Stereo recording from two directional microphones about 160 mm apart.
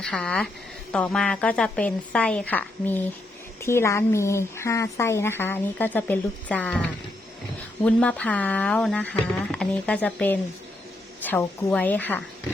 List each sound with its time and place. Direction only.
0.0 s a woman's voice: 5° left (ahead or behind)
7.9 s speech: 10° left (ahead or behind)